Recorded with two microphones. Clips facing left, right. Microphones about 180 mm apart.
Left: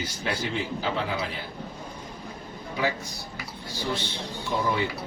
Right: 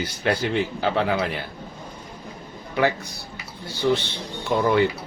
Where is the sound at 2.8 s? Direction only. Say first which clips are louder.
Right 6 dB; 65° right (ahead or behind).